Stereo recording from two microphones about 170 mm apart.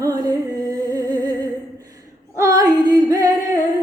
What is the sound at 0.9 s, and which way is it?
Music, 20° right (ahead or behind).